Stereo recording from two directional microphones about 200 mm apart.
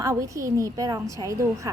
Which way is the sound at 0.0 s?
15° right (ahead or behind).